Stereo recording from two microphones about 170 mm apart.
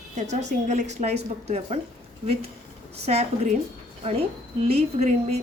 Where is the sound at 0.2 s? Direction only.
45° right (ahead or behind).